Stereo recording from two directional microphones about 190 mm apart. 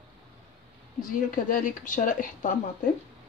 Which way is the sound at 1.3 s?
45° left (ahead or behind).